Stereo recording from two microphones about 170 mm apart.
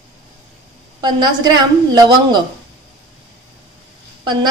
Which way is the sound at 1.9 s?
25° right (ahead or behind).